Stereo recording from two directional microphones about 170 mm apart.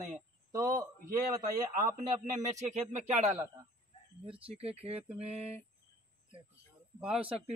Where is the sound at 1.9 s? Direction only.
45° right (ahead or behind).